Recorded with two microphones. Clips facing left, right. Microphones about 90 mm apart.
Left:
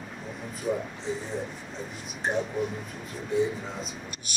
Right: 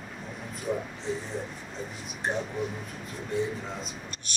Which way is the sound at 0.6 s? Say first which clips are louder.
Left 2 dB; centre (ahead or behind).